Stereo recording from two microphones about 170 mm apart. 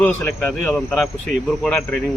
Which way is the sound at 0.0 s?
10° left (ahead or behind).